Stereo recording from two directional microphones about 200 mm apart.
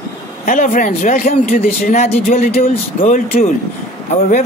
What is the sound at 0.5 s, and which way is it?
A man's voice, 40° left (ahead or behind).